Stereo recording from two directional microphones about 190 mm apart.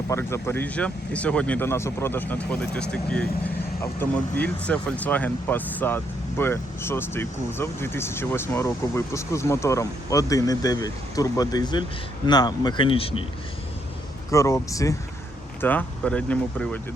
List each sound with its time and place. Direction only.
0.1 s speech: 15° left (ahead or behind)
14.3 s speech: 15° left (ahead or behind)